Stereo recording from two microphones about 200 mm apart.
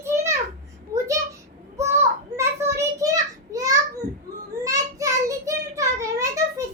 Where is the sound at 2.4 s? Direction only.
15° right (ahead or behind).